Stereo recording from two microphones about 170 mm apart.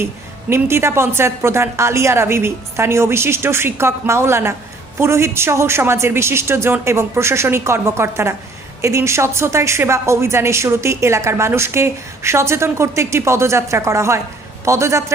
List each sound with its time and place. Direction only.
0.5 s a woman's voice: 15° right (ahead or behind)